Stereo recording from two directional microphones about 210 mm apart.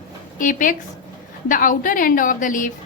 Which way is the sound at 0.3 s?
40° left (ahead or behind).